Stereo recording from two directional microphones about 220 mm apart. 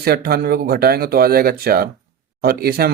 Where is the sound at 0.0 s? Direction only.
45° right (ahead or behind).